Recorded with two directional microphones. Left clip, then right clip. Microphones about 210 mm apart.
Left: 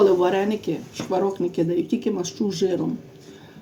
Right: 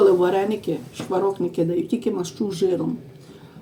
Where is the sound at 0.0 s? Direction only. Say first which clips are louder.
Right 1 dB; 20° left (ahead or behind).